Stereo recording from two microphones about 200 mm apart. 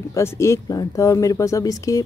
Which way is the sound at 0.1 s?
15° left (ahead or behind).